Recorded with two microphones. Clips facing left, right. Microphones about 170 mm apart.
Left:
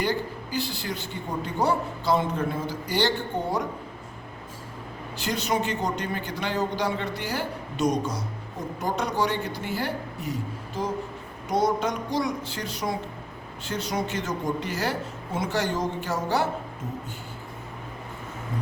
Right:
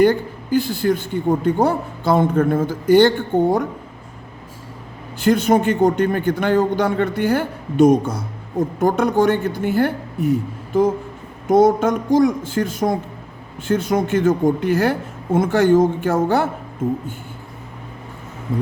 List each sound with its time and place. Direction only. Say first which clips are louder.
0.0 s a man's voice: right 12 dB; 50° right (ahead or behind)
5.2 s a man's voice: right 12 dB; 50° right (ahead or behind)